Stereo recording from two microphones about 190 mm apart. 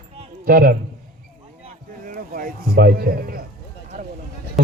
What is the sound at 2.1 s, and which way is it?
A man's voice, 45° right (ahead or behind).